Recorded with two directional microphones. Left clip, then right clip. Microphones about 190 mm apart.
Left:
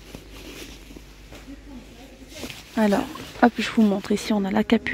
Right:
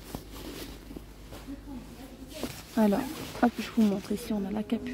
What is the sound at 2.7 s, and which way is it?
Speech, 10° left (ahead or behind).